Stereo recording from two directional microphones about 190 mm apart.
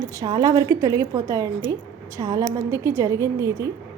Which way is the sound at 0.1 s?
20° right (ahead or behind).